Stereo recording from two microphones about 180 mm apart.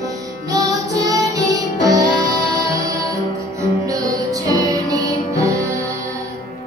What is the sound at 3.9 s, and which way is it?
Music, 20° right (ahead or behind).